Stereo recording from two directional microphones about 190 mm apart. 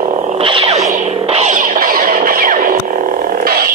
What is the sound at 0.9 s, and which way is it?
Music, 35° right (ahead or behind).